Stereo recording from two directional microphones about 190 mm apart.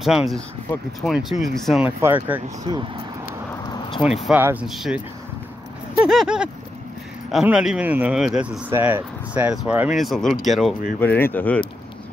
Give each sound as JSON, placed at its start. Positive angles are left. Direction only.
{"t": 0.0, "sound": "speech", "side_deg": 0}
{"t": 1.9, "sound": "speech", "side_deg": -15}
{"t": 2.7, "sound": "speech", "side_deg": -25}
{"t": 3.7, "sound": "a sound", "side_deg": 25}
{"t": 4.3, "sound": "speech", "side_deg": -10}
{"t": 11.0, "sound": "speech", "side_deg": 10}